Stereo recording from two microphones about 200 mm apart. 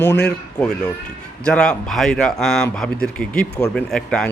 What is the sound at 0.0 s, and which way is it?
Speech, 60° left (ahead or behind).